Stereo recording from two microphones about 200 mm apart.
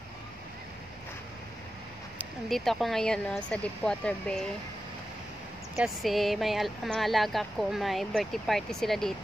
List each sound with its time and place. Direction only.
2.1 s speech: centre (ahead or behind)
5.8 s speech: centre (ahead or behind)